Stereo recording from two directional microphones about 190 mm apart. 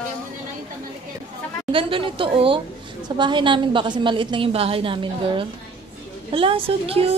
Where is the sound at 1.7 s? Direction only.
25° right (ahead or behind).